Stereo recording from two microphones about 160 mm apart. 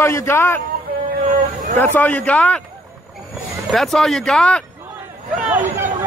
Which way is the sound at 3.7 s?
Centre (ahead or behind).